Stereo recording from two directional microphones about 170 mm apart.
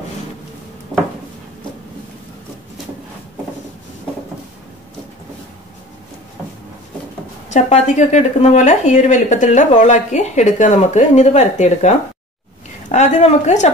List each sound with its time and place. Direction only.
7.5 s a woman's voice: 45° left (ahead or behind)
12.9 s a woman's voice: 40° left (ahead or behind)